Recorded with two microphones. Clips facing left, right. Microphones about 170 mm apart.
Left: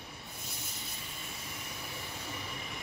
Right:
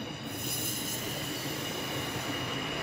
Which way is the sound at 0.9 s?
85° right.